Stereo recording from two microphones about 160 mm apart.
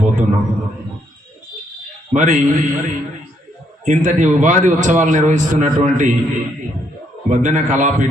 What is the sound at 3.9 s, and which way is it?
A man's voice, 50° right (ahead or behind).